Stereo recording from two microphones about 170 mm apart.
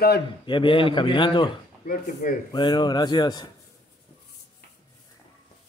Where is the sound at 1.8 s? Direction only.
50° left (ahead or behind).